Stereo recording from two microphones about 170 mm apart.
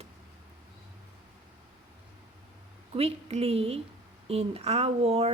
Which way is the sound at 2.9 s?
35° right (ahead or behind).